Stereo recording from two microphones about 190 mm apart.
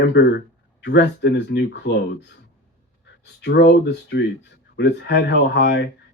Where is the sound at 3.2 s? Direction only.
60° left (ahead or behind).